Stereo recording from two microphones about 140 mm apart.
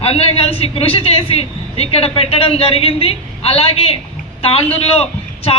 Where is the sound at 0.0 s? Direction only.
45° left (ahead or behind).